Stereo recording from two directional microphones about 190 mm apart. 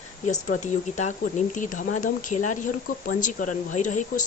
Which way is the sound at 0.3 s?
40° left (ahead or behind).